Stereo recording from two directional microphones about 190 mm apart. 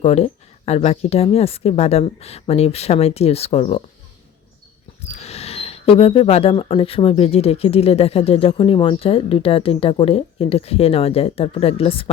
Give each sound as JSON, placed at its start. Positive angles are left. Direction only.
{"t": 0.0, "sound": "speech", "side_deg": 35}
{"t": 5.0, "sound": "speech", "side_deg": 35}